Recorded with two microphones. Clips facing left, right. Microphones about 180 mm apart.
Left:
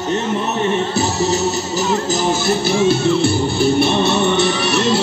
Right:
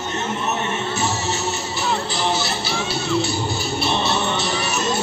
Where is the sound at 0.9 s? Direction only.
35° left (ahead or behind); by 4.9 s 80° left.